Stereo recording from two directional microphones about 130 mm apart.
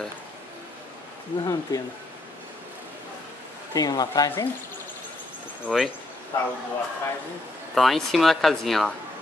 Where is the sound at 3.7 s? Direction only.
30° left (ahead or behind).